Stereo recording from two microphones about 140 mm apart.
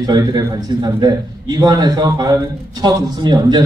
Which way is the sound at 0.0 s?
30° right (ahead or behind).